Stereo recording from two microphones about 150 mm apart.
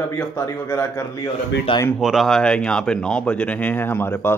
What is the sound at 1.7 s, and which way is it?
Speech, 35° left (ahead or behind).